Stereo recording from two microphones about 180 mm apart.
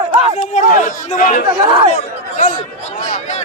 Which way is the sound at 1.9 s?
45° left (ahead or behind).